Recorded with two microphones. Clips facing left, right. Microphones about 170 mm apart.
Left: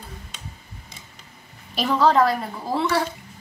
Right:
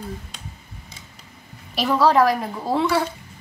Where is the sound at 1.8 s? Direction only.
5° right (ahead or behind).